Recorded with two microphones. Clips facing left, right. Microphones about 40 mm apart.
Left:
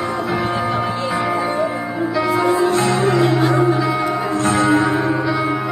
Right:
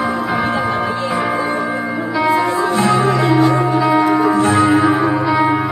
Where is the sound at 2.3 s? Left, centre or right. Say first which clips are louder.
Even; centre.